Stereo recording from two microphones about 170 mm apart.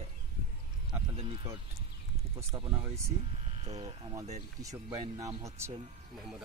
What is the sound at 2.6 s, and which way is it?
Speech, 30° right (ahead or behind).